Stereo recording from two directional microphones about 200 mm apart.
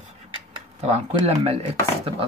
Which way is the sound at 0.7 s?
30° right (ahead or behind).